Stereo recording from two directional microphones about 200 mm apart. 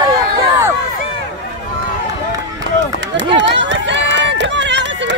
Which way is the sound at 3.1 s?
65° right (ahead or behind).